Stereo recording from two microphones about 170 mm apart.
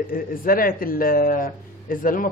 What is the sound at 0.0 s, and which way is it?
A woman's voice, 55° left (ahead or behind).